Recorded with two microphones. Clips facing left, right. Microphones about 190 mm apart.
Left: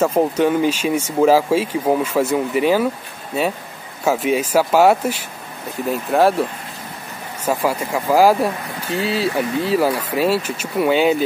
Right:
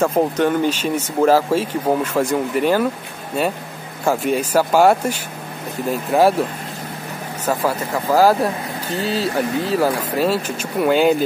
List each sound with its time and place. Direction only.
0.0 s speech: 5° left (ahead or behind)
4.0 s speech: 5° left (ahead or behind)
7.4 s speech: 10° left (ahead or behind)
9.0 s speech: 40° right (ahead or behind)
9.8 s speech: 10° left (ahead or behind)